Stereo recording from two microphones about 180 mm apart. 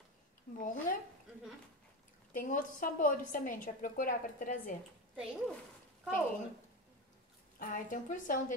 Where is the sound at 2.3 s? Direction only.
50° left (ahead or behind).